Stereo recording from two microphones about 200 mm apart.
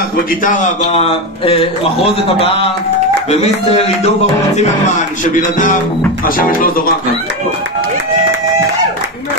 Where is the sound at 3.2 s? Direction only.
30° left (ahead or behind).